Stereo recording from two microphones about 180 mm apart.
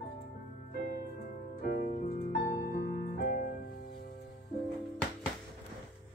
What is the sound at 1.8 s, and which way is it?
Music, 45° left (ahead or behind).